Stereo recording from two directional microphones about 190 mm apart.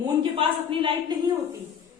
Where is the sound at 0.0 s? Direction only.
25° right (ahead or behind).